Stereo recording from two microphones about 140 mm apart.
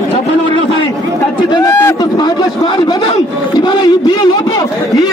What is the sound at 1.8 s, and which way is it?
Speech, 30° left (ahead or behind).